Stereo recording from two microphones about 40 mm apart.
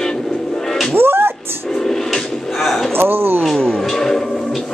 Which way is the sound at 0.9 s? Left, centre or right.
Right.